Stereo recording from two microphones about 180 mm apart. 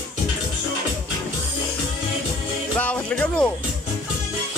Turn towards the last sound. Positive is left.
turn(degrees=10)  # may be behind; listen again after turning